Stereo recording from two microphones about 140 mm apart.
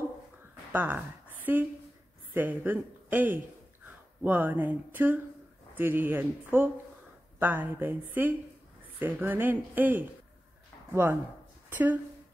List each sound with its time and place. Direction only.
0.7 s a woman's voice: 10° right (ahead or behind)